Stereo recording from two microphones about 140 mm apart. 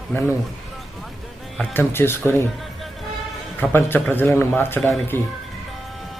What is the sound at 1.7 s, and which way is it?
Speech, 15° left (ahead or behind).